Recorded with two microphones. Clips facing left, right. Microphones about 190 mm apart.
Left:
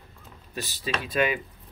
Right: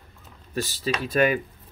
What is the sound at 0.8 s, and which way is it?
Speech, 45° right (ahead or behind).